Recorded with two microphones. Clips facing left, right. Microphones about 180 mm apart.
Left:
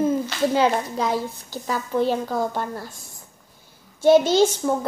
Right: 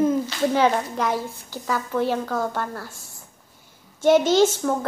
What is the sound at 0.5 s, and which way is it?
A woman's voice, 10° left (ahead or behind).